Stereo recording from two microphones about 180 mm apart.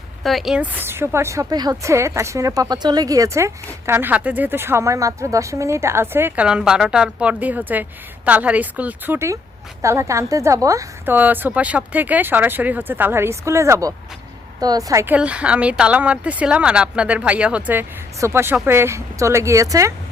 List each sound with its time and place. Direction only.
0.2 s a woman's voice: centre (ahead or behind); by 19.9 s 20° right (ahead or behind)